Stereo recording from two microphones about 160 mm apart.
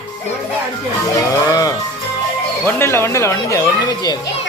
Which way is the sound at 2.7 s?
15° left (ahead or behind).